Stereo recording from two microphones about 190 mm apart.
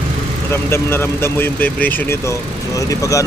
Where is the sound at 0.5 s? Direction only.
15° left (ahead or behind).